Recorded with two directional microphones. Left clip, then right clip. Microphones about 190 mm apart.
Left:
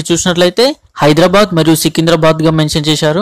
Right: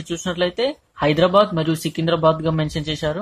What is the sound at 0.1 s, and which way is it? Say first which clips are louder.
Speech: left 12 dB; 45° left (ahead or behind).